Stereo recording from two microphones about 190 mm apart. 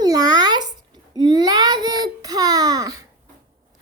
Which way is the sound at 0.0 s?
20° right (ahead or behind).